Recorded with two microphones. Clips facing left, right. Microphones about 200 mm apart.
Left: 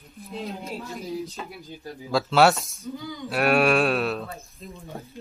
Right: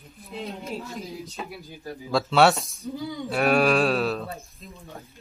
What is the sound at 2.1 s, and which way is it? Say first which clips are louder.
Speech: even; centre (ahead or behind).